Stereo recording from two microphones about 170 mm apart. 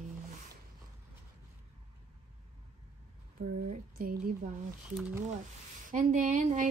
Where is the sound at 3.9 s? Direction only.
55° right (ahead or behind).